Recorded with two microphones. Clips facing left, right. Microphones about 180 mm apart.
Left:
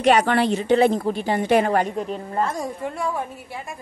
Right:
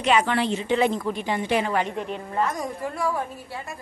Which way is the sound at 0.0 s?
45° left (ahead or behind).